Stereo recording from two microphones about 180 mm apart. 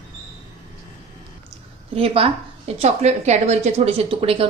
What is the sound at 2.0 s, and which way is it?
A woman's voice, 30° right (ahead or behind).